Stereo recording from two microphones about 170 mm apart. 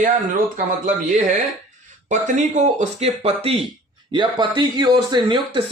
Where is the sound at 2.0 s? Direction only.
45° right (ahead or behind).